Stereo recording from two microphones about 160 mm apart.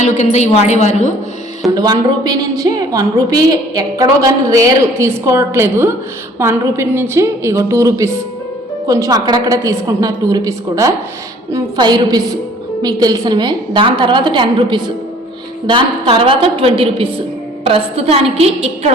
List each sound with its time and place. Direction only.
0.0 s a woman's voice: 50° left (ahead or behind)
1.7 s a woman's voice: 25° right (ahead or behind); by 18.9 s 40° right (ahead or behind)